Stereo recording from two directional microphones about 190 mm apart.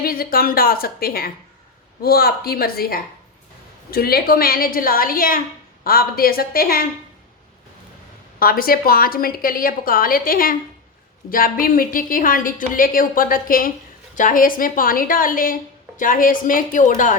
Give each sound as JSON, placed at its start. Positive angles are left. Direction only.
{"t": 0.0, "sound": "a woman's voice", "side_deg": 50}
{"t": 8.4, "sound": "a woman's voice", "side_deg": 50}